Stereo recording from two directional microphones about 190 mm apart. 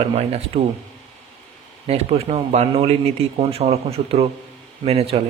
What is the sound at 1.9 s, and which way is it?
Speech, 30° right (ahead or behind).